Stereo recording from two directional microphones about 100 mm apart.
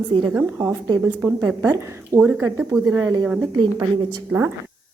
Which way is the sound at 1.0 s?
25° right (ahead or behind).